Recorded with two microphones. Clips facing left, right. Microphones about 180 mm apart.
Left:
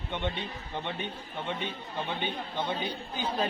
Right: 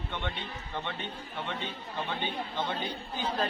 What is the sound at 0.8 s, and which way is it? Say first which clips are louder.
Speech: left 2 dB; 15° left (ahead or behind).